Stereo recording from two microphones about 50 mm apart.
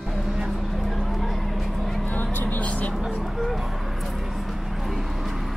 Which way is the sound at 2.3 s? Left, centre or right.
Left.